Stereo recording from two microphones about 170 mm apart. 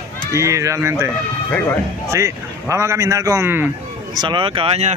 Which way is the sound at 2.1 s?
15° right (ahead or behind).